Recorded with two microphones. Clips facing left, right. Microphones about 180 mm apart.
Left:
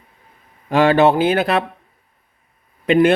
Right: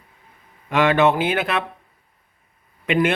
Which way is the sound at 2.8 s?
35° left (ahead or behind).